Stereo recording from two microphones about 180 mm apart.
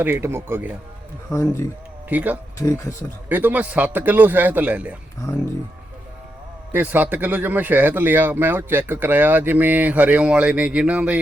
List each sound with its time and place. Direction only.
0.0 s speech: 10° right (ahead or behind)
1.3 s a man's voice: 15° left (ahead or behind)
2.0 s speech: 10° right (ahead or behind)
2.6 s a man's voice: 15° left (ahead or behind)
3.2 s speech: 10° right (ahead or behind)
5.2 s speech: 20° left (ahead or behind)
6.7 s speech: 10° right (ahead or behind)